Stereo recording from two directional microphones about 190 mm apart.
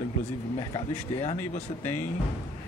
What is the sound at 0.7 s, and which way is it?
A man's voice, 30° left (ahead or behind).